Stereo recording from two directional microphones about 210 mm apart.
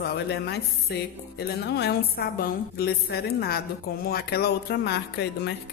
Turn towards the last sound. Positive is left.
turn(degrees=55)  # may be behind; listen again after turning